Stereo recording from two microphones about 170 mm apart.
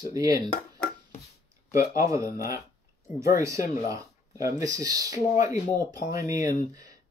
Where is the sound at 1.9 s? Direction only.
20° right (ahead or behind).